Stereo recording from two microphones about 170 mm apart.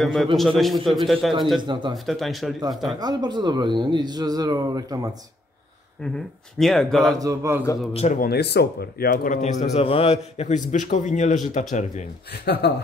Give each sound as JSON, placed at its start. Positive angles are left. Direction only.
{"t": 0.0, "sound": "speech", "side_deg": 0}
{"t": 1.6, "sound": "speech", "side_deg": -25}
{"t": 2.0, "sound": "speech", "side_deg": 0}
{"t": 3.0, "sound": "speech", "side_deg": -25}
{"t": 6.1, "sound": "speech", "side_deg": 0}
{"t": 7.2, "sound": "a man's voice", "side_deg": -15}
{"t": 7.9, "sound": "speech", "side_deg": 40}
{"t": 8.2, "sound": "a man's voice", "side_deg": 70}
{"t": 12.6, "sound": "speech", "side_deg": 75}